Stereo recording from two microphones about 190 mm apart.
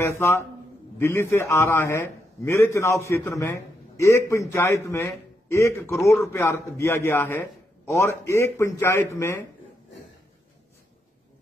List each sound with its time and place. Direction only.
0.0 s a man's voice: 15° left (ahead or behind)